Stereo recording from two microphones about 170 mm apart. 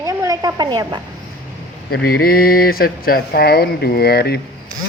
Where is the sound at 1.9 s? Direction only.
65° left (ahead or behind).